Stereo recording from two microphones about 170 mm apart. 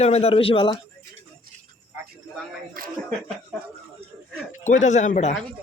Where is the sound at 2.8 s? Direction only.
55° right (ahead or behind).